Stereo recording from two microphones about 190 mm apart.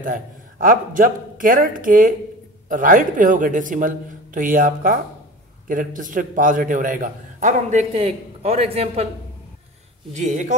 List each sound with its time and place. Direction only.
0.0 s a man's voice: 45° right (ahead or behind)
10.1 s a man's voice: 40° right (ahead or behind)